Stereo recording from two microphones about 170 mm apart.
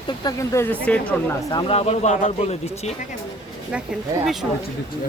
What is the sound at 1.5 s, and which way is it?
Speech, 30° left (ahead or behind).